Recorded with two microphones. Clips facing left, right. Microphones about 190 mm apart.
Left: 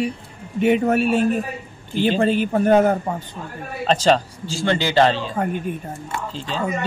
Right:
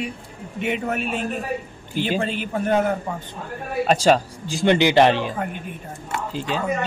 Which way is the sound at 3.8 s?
10° right (ahead or behind).